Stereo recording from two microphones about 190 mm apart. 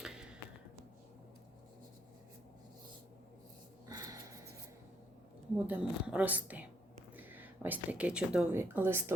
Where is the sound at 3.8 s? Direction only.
20° right (ahead or behind).